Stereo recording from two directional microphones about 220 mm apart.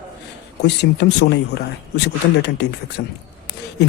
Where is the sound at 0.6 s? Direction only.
50° left (ahead or behind).